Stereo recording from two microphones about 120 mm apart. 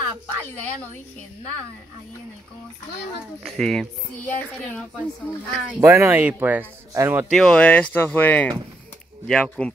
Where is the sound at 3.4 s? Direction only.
5° left (ahead or behind).